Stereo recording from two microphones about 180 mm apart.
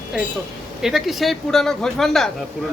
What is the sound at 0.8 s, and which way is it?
Speech, centre (ahead or behind).